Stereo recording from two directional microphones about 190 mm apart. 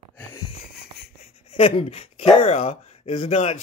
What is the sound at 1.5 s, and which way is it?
Speech, 30° left (ahead or behind).